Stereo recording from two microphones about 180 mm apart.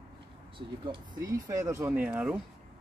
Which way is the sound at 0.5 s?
25° right (ahead or behind).